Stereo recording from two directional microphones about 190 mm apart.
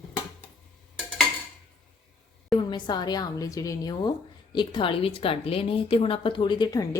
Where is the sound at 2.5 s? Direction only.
25° left (ahead or behind).